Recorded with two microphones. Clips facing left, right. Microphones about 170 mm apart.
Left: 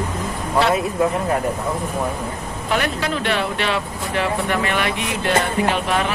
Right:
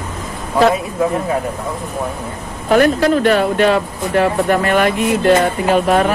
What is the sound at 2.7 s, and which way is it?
Speech, 45° right (ahead or behind).